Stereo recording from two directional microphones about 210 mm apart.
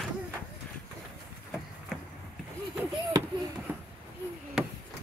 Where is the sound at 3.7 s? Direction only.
10° right (ahead or behind).